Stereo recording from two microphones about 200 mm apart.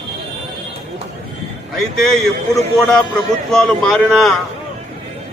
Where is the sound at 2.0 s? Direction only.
Centre (ahead or behind).